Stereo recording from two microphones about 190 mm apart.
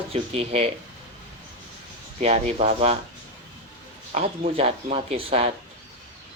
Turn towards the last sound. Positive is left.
turn(degrees=-30)  # may be behind; listen again after turning